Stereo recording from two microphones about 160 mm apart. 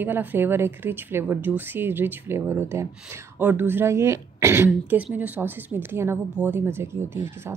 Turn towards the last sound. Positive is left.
turn(degrees=-15)  # may be behind; listen again after turning